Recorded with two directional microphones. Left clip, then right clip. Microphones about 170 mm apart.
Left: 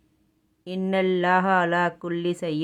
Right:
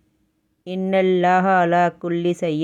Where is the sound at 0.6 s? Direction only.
15° right (ahead or behind).